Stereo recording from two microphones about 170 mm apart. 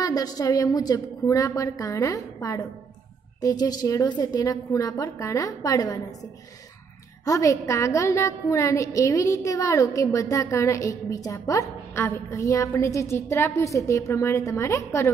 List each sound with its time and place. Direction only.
0.0 s a woman's voice: 20° left (ahead or behind)
7.2 s a woman's voice: 20° left (ahead or behind)